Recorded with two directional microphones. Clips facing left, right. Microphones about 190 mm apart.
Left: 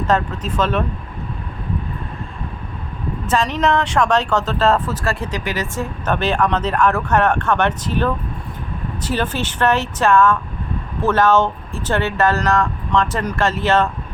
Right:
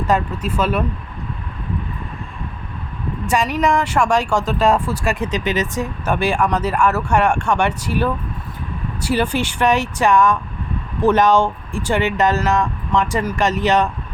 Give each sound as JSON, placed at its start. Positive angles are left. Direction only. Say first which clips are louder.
{"t": 0.1, "sound": "speech", "louder": "even", "side_deg": -10}
{"t": 3.2, "sound": "speech", "louder": "even", "side_deg": -10}